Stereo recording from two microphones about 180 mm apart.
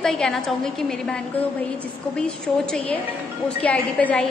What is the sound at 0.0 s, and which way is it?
A woman's voice, 5° left (ahead or behind).